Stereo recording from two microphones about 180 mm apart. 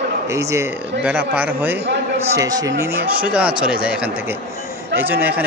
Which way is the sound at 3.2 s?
5° right (ahead or behind).